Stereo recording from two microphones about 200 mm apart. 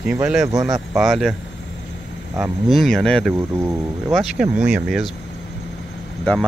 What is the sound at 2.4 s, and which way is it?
Speech, centre (ahead or behind).